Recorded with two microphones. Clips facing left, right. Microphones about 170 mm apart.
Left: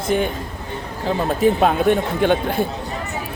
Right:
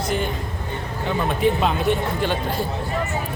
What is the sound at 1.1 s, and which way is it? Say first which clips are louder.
Speech: left 3 dB; 40° left (ahead or behind).